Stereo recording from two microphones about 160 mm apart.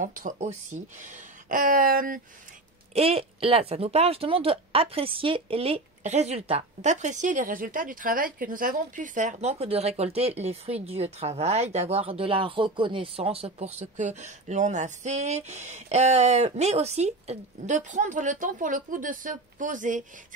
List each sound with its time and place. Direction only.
0.0 s speech: 55° right (ahead or behind)
2.9 s speech: 40° right (ahead or behind); by 20.1 s 55° right (ahead or behind)